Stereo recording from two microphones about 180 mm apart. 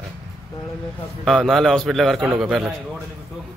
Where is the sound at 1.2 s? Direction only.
Centre (ahead or behind).